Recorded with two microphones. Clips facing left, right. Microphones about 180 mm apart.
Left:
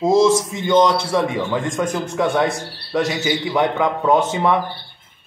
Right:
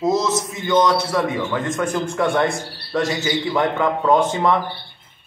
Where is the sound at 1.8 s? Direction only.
10° left (ahead or behind).